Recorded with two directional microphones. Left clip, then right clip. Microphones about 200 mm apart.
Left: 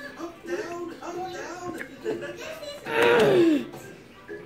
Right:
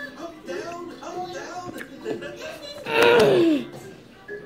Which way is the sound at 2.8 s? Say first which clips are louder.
Right 3 dB; 5° right (ahead or behind).